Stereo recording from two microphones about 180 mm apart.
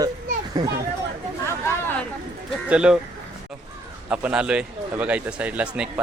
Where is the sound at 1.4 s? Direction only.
15° left (ahead or behind).